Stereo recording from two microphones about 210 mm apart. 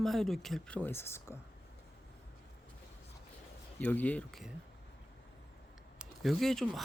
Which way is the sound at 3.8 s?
10° left (ahead or behind).